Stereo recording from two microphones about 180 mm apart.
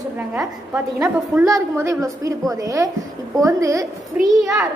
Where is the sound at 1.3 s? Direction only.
15° right (ahead or behind).